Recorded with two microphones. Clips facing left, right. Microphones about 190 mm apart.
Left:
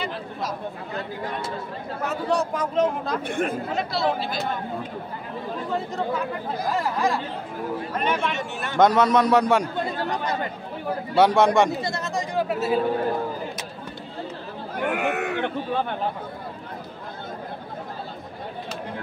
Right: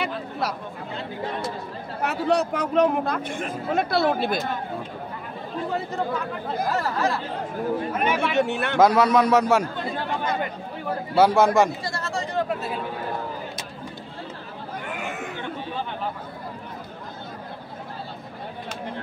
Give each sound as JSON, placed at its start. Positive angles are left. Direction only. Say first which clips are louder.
{"t": 0.0, "sound": "chatter", "louder": "right 2 dB", "side_deg": -70}
{"t": 2.0, "sound": "a man's voice", "louder": "right 2 dB", "side_deg": -65}
{"t": 6.7, "sound": "speech", "louder": "left 2 dB", "side_deg": 15}
{"t": 7.9, "sound": "speech", "louder": "right 1 dB", "side_deg": -5}
{"t": 8.4, "sound": "a man's voice", "louder": "right 8 dB", "side_deg": -65}
{"t": 8.7, "sound": "a man's voice", "louder": "even", "side_deg": 0}
{"t": 11.1, "sound": "a man's voice", "louder": "even", "side_deg": 0}
{"t": 11.8, "sound": "chatter", "louder": "left 2 dB", "side_deg": 20}
{"t": 12.4, "sound": "a man's voice", "louder": "left 4 dB", "side_deg": 5}
{"t": 14.8, "sound": "speech", "louder": "left 9 dB", "side_deg": 65}